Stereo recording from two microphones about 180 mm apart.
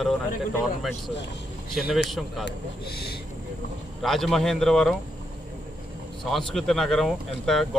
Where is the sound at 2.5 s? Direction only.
60° left (ahead or behind).